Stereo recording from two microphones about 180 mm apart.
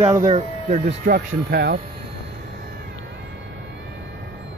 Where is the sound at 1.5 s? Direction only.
65° right (ahead or behind).